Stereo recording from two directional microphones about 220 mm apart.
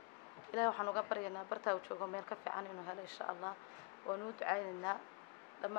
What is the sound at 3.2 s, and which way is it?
Speech, 20° left (ahead or behind).